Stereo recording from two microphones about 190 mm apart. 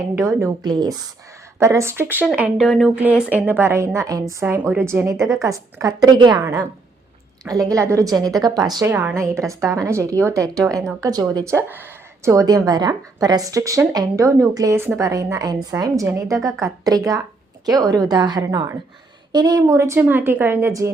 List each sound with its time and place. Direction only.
0.3 s a woman's voice: 20° right (ahead or behind)